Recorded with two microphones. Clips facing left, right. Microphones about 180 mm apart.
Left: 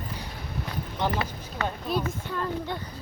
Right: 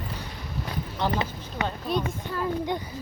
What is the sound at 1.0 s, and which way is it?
Speech, 20° left (ahead or behind).